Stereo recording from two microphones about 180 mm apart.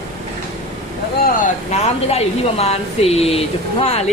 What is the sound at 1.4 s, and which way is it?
Speech, 40° left (ahead or behind).